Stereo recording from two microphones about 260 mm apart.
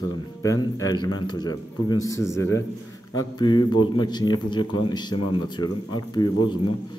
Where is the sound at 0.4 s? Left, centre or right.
Centre.